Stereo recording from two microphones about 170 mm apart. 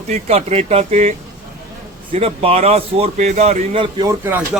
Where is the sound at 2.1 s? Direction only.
35° right (ahead or behind).